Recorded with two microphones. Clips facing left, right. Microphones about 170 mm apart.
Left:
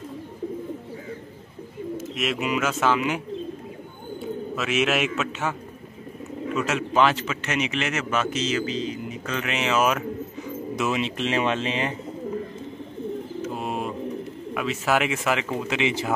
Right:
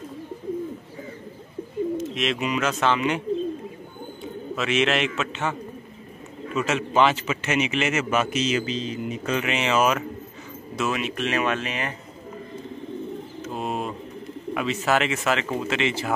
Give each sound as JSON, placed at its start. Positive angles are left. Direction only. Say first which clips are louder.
{"t": 2.0, "sound": "speech", "louder": "right 2 dB", "side_deg": 5}
{"t": 4.6, "sound": "a man's voice", "louder": "right 1 dB", "side_deg": 5}
{"t": 9.4, "sound": "speech", "louder": "even", "side_deg": 0}
{"t": 10.8, "sound": "speech", "louder": "even", "side_deg": 20}
{"t": 13.4, "sound": "bird", "louder": "right 2 dB", "side_deg": 10}
{"t": 14.5, "sound": "speech", "louder": "right 1 dB", "side_deg": 5}